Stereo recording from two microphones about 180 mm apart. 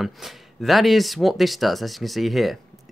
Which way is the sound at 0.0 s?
Centre (ahead or behind).